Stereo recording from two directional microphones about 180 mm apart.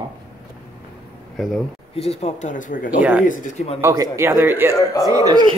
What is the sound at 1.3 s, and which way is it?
Speech, centre (ahead or behind).